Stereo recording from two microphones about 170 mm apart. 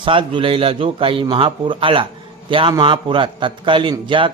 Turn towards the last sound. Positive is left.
turn(degrees=-30)  # may be behind; listen again after turning